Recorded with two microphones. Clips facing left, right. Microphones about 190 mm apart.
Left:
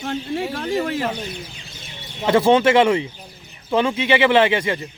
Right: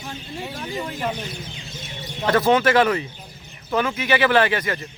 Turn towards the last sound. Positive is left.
turn(degrees=25)  # may be behind; listen again after turning